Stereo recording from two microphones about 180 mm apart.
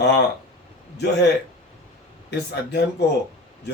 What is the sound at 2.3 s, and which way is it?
Speech, 70° left (ahead or behind).